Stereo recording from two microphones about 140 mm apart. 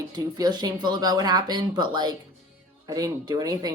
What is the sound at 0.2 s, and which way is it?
Speech, 30° right (ahead or behind).